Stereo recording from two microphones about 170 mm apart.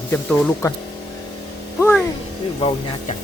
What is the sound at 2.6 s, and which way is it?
Speech, 30° left (ahead or behind).